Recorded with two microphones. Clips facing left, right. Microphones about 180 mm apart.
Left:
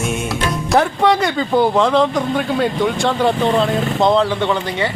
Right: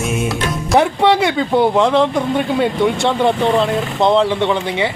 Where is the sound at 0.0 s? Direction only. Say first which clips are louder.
Right 1 dB; centre (ahead or behind).